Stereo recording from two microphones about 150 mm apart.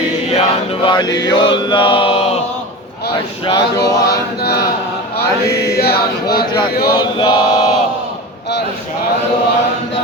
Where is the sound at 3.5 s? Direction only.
25° left (ahead or behind).